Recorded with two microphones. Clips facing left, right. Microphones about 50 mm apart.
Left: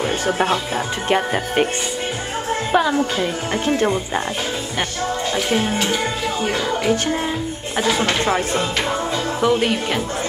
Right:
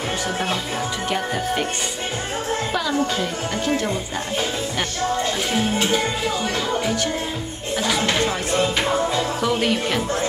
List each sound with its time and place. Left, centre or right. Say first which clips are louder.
1.0 s speech: left 5 dB; left
2.7 s a woman's voice: left 7 dB; left
5.5 s speech: left 4 dB; centre
8.0 s speech: left 3 dB; centre